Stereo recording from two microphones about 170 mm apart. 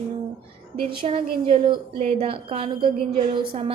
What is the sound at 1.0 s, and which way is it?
A woman's voice, 35° right (ahead or behind).